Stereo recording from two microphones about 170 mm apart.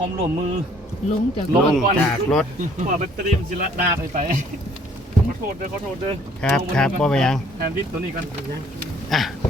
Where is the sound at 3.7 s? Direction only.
50° right (ahead or behind).